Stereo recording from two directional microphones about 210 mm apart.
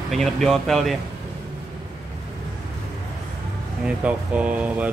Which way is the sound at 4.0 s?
5° right (ahead or behind).